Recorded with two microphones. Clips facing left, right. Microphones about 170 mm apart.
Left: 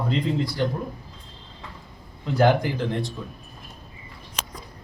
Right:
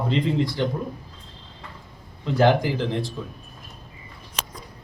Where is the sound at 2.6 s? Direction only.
Centre (ahead or behind).